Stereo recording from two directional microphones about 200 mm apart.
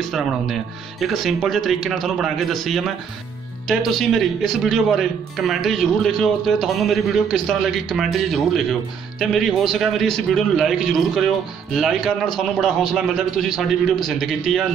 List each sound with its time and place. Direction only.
0.0 s a man's voice: centre (ahead or behind)